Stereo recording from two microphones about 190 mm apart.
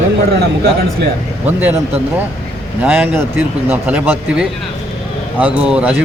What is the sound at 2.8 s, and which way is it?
Speech, 10° right (ahead or behind).